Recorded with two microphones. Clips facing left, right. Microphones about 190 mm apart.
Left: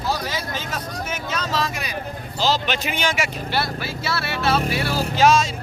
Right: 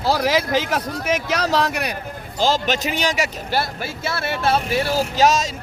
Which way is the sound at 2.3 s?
50° right (ahead or behind).